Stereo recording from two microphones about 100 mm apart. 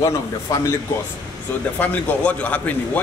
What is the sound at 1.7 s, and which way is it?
Speech, 15° left (ahead or behind).